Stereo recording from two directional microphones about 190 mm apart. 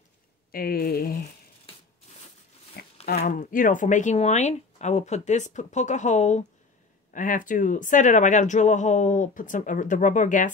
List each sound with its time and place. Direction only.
0.5 s speech: 50° left (ahead or behind)
2.8 s a sound: 55° left (ahead or behind)
3.2 s speech: 40° left (ahead or behind)